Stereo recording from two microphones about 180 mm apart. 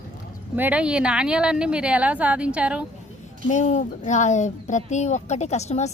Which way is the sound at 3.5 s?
40° left (ahead or behind).